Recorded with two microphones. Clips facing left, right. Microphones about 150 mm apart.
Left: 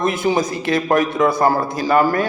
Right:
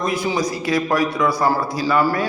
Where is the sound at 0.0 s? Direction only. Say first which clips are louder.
Left 3 dB; 50° left (ahead or behind).